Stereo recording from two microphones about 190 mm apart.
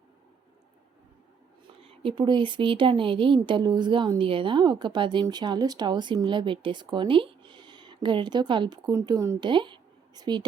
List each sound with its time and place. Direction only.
1.8 s speech: 30° right (ahead or behind)